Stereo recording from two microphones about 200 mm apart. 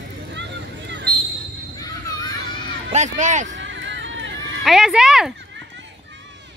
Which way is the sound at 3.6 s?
65° right (ahead or behind).